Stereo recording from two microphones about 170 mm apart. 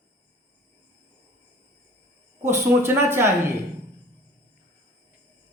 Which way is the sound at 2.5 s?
15° right (ahead or behind).